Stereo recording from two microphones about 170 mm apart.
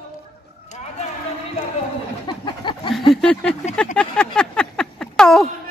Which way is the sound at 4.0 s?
5° left (ahead or behind).